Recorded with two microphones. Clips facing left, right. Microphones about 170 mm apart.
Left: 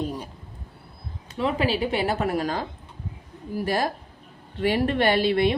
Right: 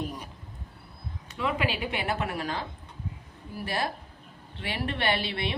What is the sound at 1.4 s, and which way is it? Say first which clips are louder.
A woman's voice: left 6 dB; 35° left (ahead or behind).